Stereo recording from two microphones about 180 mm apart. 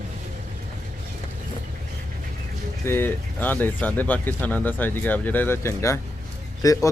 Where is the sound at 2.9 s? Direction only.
10° left (ahead or behind).